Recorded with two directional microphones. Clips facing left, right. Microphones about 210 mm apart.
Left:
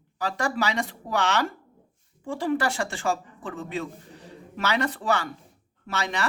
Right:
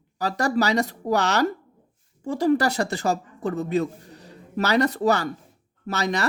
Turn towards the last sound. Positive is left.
turn(degrees=-40)  # may be behind; listen again after turning